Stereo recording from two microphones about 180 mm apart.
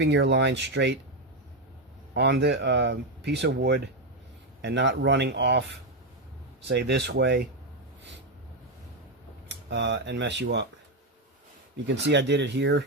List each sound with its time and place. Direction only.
0.0 s speech: 70° right (ahead or behind)
2.1 s speech: 65° right (ahead or behind)
4.6 s speech: 80° right
6.7 s speech: 70° right (ahead or behind)
9.5 s speech: 75° right (ahead or behind)
11.9 s speech: 75° right (ahead or behind)